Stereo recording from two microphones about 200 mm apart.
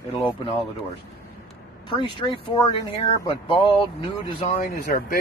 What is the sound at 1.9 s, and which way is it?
Speech, 25° left (ahead or behind).